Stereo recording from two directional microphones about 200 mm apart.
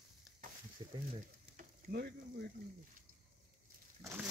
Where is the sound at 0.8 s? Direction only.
20° right (ahead or behind).